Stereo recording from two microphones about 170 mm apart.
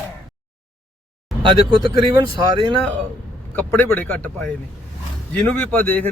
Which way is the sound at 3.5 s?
10° left (ahead or behind).